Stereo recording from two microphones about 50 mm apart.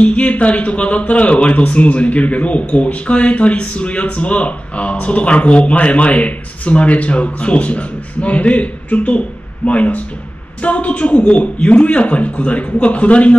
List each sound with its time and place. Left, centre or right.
0.0 s a man's voice: left